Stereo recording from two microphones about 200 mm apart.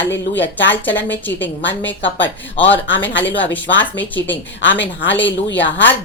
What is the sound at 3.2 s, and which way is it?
Speech, 65° left (ahead or behind).